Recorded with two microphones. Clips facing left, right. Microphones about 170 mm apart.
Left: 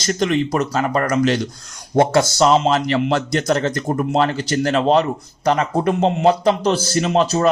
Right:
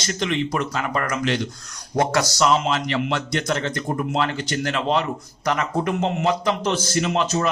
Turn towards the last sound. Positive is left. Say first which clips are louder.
# left 5 dB
turn(degrees=35)  # may be behind; listen again after turning